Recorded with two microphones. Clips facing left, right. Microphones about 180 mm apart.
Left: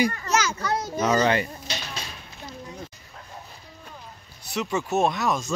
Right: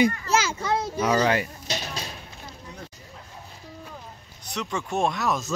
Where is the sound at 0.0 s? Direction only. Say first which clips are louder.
Right 2 dB; 30° right (ahead or behind).